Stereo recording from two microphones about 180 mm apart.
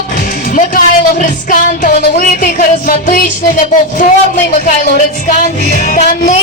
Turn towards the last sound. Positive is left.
turn(degrees=45)  # may be behind; listen again after turning